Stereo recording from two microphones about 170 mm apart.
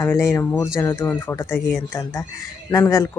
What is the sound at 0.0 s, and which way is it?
Speech, 15° left (ahead or behind).